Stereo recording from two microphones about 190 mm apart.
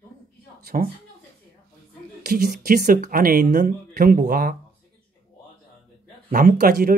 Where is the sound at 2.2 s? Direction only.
50° right (ahead or behind).